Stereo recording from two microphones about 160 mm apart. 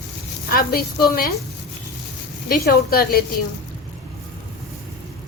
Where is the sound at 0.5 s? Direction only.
70° left (ahead or behind).